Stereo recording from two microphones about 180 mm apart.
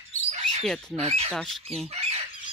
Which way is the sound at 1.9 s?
35° right (ahead or behind).